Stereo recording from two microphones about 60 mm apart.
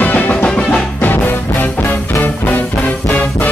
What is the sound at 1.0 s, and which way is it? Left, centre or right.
Music, left.